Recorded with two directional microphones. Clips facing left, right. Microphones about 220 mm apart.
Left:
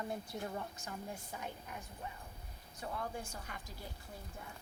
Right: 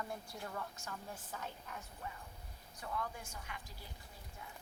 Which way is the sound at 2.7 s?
30° left (ahead or behind).